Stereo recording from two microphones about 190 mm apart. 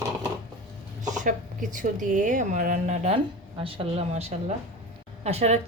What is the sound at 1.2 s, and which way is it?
A woman's voice, 45° right (ahead or behind).